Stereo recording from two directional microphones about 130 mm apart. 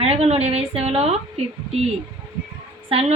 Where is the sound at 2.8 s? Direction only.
50° right (ahead or behind).